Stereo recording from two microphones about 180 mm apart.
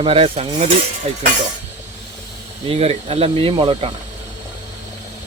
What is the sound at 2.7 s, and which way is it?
Speech, 30° right (ahead or behind).